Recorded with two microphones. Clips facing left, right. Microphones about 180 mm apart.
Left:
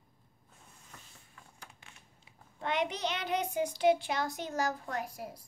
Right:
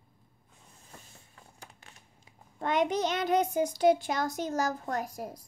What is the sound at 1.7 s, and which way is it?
Child singing, 40° right (ahead or behind).